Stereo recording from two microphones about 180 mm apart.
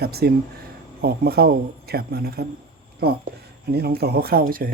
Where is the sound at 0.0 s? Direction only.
60° right (ahead or behind).